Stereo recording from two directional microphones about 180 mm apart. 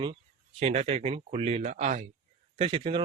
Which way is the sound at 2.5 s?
30° right (ahead or behind).